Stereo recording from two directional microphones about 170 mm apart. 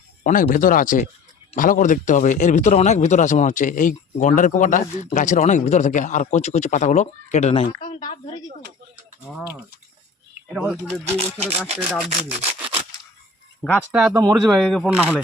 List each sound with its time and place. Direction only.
0.3 s a man's voice: 50° left (ahead or behind)
7.9 s a sound: 30° left (ahead or behind)
10.5 s speech: centre (ahead or behind)
14.1 s speech: 20° right (ahead or behind)
14.3 s speech: centre (ahead or behind)